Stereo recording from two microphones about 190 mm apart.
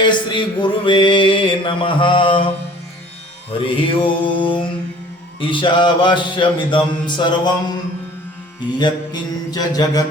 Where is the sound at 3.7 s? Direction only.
25° left (ahead or behind).